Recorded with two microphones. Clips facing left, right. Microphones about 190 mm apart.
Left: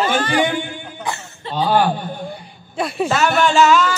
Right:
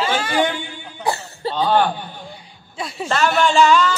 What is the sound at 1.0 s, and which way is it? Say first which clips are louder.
Cough: right 7 dB; 35° right (ahead or behind).